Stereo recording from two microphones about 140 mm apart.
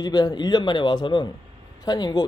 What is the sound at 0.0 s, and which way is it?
Speech, 30° left (ahead or behind).